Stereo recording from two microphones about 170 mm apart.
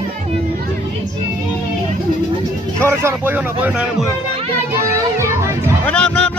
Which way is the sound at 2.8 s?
15° right (ahead or behind).